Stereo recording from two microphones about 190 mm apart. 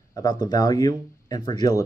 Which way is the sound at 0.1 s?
20° left (ahead or behind).